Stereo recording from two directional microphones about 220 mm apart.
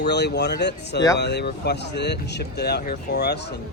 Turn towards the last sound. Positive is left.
turn(degrees=50)  # may be behind; listen again after turning